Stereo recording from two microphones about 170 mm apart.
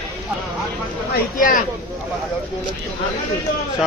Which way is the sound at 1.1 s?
55° left (ahead or behind).